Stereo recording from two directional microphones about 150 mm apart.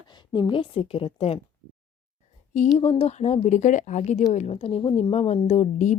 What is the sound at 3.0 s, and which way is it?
Speech, 50° left (ahead or behind).